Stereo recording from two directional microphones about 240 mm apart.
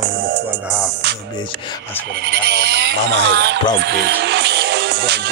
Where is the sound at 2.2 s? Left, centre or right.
Right.